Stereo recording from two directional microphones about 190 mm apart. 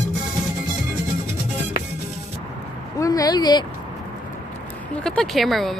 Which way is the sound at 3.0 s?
20° left (ahead or behind).